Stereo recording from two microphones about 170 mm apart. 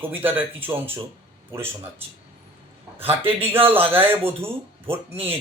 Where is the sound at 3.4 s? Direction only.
10° right (ahead or behind).